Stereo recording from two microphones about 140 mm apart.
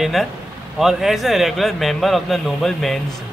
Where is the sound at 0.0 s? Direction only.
Centre (ahead or behind).